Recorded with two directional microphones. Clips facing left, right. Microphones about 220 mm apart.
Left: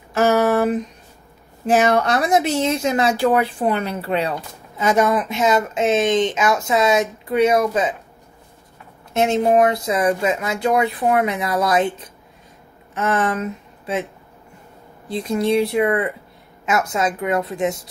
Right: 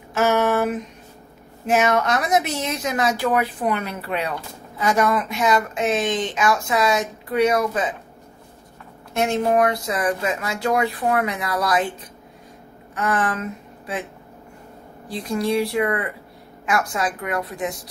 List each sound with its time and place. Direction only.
0.1 s a sound: 35° left (ahead or behind)
1.7 s speech: 35° left (ahead or behind)
9.1 s speech: 20° left (ahead or behind)
12.9 s a woman's voice: 25° left (ahead or behind)
15.0 s speech: 25° left (ahead or behind)